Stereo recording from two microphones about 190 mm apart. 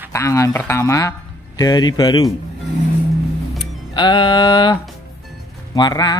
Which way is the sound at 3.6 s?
25° left (ahead or behind).